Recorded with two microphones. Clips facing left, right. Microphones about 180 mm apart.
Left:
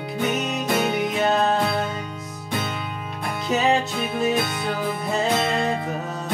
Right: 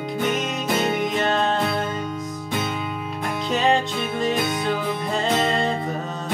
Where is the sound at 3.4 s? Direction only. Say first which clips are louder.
Even; 5° left (ahead or behind).